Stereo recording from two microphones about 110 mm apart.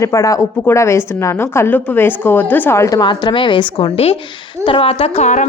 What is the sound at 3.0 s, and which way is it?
Speech, 45° left (ahead or behind).